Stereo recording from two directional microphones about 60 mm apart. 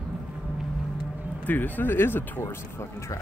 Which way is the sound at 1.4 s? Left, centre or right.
Left.